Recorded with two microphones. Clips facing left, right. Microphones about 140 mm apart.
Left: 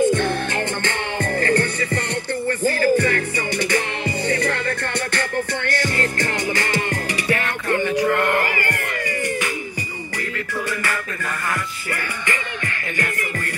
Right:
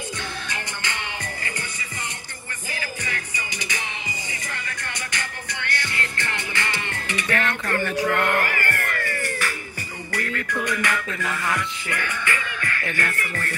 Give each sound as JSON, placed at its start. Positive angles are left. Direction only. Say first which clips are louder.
{"t": 0.0, "sound": "music", "louder": "left 15 dB", "side_deg": 55}
{"t": 7.2, "sound": "music", "louder": "left 1 dB", "side_deg": 30}
{"t": 7.7, "sound": "cat", "louder": "left 5 dB", "side_deg": 15}
{"t": 10.1, "sound": "music", "louder": "even", "side_deg": 10}